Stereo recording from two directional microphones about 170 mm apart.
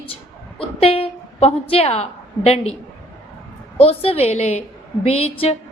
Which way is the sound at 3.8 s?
35° left (ahead or behind).